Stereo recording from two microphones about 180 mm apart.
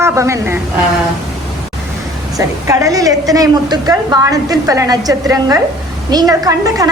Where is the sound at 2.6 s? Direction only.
15° right (ahead or behind).